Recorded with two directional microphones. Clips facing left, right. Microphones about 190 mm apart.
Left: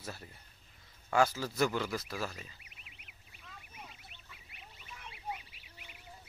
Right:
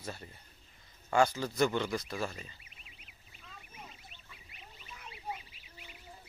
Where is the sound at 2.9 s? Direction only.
60° left (ahead or behind).